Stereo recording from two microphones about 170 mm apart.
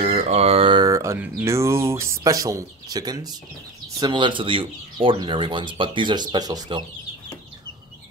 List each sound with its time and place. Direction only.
0.0 s speech: 40° right (ahead or behind); by 6.8 s 25° right (ahead or behind)